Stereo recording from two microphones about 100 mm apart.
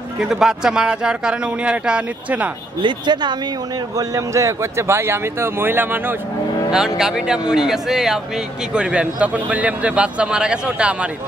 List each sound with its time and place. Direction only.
0.2 s a man's voice: 5° right (ahead or behind)
2.8 s speech: 50° right (ahead or behind)
3.9 s a man's voice: 35° right (ahead or behind)
6.7 s a man's voice: 5° right (ahead or behind)